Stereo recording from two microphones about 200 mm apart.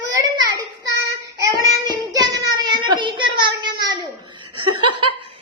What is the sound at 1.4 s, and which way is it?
Child singing, 20° right (ahead or behind).